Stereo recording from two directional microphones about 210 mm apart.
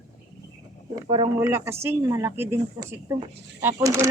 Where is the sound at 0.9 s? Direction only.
20° right (ahead or behind).